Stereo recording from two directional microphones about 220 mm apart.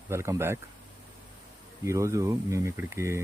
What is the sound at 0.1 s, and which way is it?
Speech, 10° right (ahead or behind).